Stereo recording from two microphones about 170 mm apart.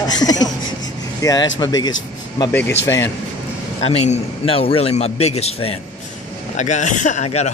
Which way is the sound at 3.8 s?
35° left (ahead or behind).